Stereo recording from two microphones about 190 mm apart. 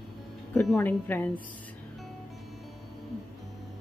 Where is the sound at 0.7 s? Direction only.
5° left (ahead or behind).